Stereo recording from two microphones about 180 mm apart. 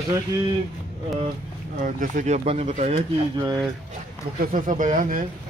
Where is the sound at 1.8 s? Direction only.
45° right (ahead or behind).